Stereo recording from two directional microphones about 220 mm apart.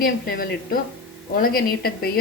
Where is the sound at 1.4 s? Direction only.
45° left (ahead or behind).